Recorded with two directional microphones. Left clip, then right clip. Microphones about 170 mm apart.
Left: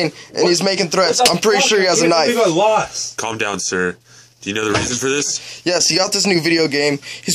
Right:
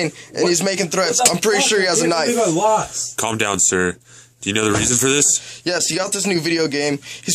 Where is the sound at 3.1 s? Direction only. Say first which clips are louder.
Right 2 dB; 70° right (ahead or behind).